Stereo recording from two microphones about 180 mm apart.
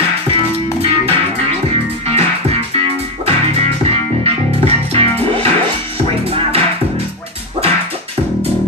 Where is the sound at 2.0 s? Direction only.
35° right (ahead or behind).